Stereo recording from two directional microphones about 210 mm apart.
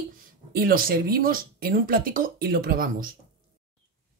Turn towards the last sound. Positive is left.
turn(degrees=-45)  # may be behind; listen again after turning